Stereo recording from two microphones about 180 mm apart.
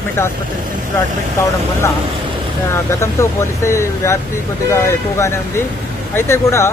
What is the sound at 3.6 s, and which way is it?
Speech, 15° left (ahead or behind).